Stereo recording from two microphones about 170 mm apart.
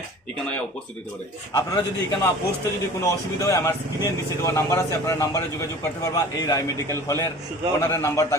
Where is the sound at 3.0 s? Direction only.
20° left (ahead or behind).